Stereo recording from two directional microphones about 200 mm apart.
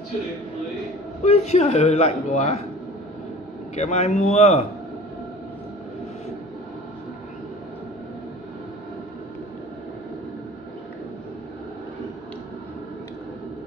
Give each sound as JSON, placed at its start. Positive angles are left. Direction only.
{"t": 1.2, "sound": "speech", "side_deg": 30}
{"t": 3.7, "sound": "speech", "side_deg": 30}